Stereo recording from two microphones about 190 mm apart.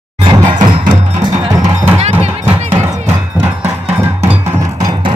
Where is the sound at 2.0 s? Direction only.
30° right (ahead or behind).